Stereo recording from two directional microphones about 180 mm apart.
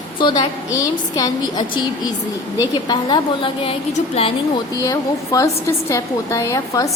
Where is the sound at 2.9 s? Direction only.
25° left (ahead or behind).